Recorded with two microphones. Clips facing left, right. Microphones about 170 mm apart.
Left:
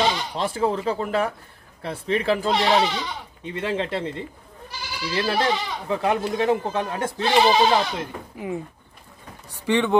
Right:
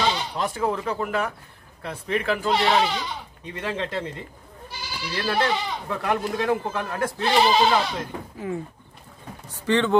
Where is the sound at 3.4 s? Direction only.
30° left (ahead or behind).